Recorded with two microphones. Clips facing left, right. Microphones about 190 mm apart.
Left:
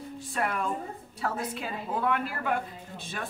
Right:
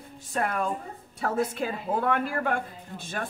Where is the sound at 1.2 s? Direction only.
50° right (ahead or behind).